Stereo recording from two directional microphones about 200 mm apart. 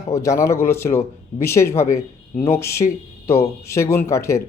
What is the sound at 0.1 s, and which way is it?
Speech, 15° left (ahead or behind).